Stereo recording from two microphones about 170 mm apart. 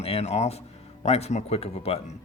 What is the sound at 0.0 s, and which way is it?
Speech, 35° left (ahead or behind).